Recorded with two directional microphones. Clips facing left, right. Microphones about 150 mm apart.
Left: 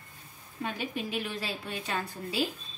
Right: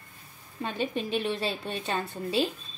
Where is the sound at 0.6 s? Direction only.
30° right (ahead or behind).